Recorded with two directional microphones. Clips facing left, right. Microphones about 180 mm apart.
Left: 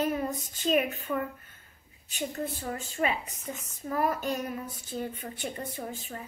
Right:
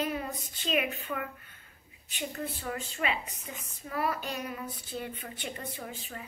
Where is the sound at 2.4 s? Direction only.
45° left (ahead or behind).